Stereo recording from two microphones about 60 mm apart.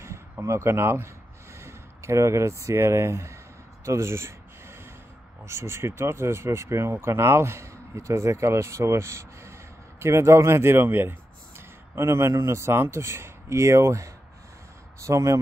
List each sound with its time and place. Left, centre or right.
0.0 s speech: right
3.8 s a sound: right
5.4 s speech: right